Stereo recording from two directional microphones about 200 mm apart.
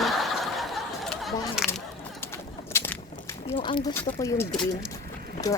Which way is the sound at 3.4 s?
25° left (ahead or behind).